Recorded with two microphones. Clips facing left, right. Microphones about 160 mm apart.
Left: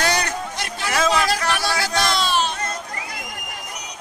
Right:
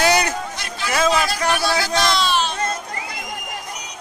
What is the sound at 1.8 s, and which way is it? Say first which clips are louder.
Music: right 2 dB; 45° left (ahead or behind).